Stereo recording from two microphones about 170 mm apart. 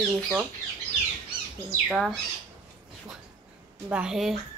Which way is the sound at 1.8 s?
5° right (ahead or behind).